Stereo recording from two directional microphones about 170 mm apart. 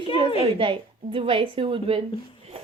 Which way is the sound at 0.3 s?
30° right (ahead or behind).